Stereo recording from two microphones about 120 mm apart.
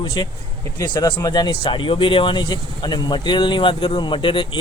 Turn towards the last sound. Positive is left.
turn(degrees=45)  # may be behind; listen again after turning